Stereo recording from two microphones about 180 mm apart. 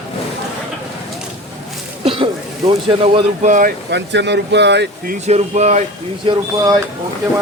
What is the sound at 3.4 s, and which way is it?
Speech, 45° right (ahead or behind).